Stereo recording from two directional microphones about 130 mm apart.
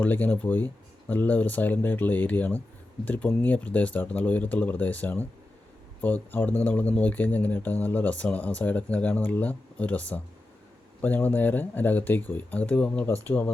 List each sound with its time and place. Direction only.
0.0 s speech: 10° left (ahead or behind)